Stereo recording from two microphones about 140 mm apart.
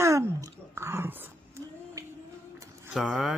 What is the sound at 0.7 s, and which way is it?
Dog, 20° right (ahead or behind).